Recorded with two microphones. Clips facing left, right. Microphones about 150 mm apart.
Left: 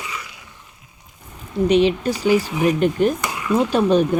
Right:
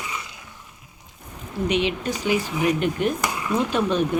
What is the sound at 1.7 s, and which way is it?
Speech, 35° left (ahead or behind).